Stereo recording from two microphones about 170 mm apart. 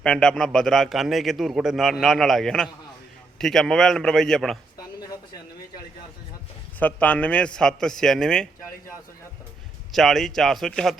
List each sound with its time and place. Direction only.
0.0 s a man's voice: 5° left (ahead or behind)
4.8 s a sound: 25° left (ahead or behind)
6.7 s a man's voice: 10° left (ahead or behind)
9.9 s a man's voice: centre (ahead or behind)